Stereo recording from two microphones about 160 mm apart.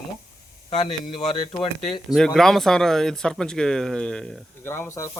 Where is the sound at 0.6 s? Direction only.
35° left (ahead or behind).